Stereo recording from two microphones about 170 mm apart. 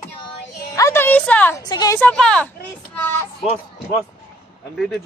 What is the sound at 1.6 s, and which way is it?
Speech, 25° left (ahead or behind).